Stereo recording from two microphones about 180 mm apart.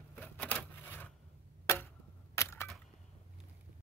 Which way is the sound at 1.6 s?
15° left (ahead or behind).